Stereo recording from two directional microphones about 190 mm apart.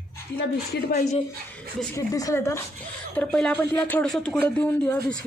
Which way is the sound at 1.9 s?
15° left (ahead or behind).